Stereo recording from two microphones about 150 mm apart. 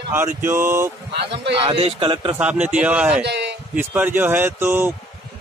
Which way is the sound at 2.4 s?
10° right (ahead or behind).